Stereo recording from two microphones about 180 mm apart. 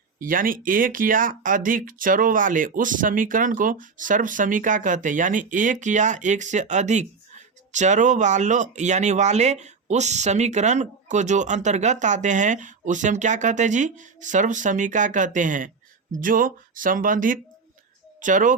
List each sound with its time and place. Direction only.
0.2 s speech: 50° right (ahead or behind)